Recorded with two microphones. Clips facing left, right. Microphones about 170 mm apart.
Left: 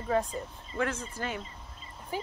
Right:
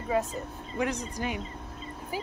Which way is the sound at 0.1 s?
10° right (ahead or behind).